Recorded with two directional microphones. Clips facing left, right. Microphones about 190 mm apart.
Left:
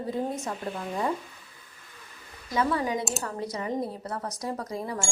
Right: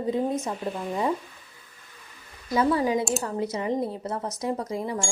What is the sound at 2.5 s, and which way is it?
Speech, 30° right (ahead or behind).